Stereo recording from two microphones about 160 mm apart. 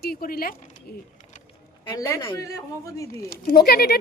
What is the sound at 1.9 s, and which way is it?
A man's voice, 20° left (ahead or behind).